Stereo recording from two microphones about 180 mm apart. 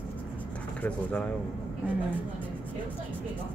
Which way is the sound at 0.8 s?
5° left (ahead or behind).